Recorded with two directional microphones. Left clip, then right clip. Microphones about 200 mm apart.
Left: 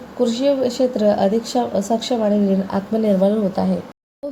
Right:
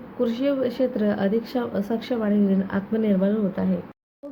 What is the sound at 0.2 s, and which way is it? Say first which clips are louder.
Speech: left 6 dB; 5° left (ahead or behind).